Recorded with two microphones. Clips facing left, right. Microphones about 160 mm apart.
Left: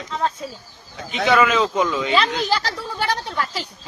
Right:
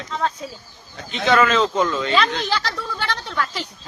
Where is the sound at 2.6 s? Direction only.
40° left (ahead or behind).